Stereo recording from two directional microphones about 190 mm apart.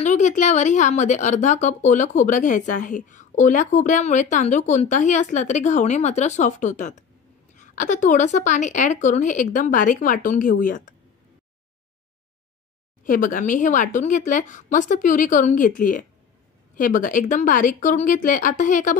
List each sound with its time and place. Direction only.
0.0 s a woman's voice: 40° left (ahead or behind)
13.0 s speech: 45° left (ahead or behind)